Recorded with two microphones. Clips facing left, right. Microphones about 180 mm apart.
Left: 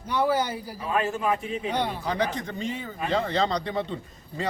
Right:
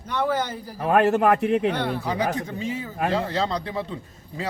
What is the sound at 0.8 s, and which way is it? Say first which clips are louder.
Speech: right 9 dB; 65° right (ahead or behind).